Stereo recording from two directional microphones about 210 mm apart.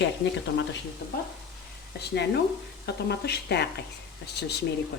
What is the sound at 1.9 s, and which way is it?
A woman's voice, 55° left (ahead or behind).